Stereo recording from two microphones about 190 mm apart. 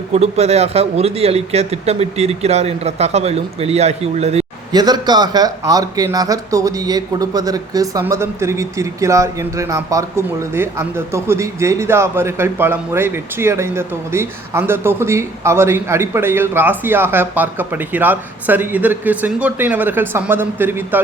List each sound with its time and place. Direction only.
0.1 s speech: 35° right (ahead or behind)
4.7 s speech: 20° right (ahead or behind)